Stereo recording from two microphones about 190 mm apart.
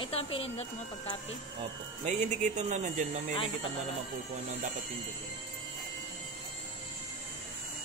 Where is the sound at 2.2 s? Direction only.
40° right (ahead or behind).